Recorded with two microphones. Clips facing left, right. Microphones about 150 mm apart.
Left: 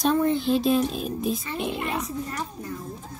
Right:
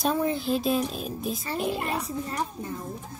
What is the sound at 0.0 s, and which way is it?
Speech, 5° right (ahead or behind).